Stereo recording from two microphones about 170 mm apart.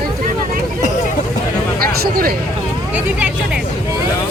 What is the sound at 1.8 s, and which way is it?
Speech, 60° right (ahead or behind).